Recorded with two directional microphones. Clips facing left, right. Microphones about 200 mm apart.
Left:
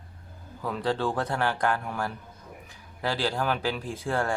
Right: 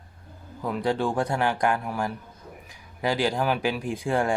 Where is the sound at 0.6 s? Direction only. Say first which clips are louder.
Right 2 dB; 15° right (ahead or behind).